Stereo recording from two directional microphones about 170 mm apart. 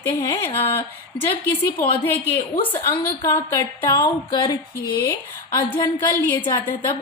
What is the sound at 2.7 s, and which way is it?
A woman's voice, 15° left (ahead or behind).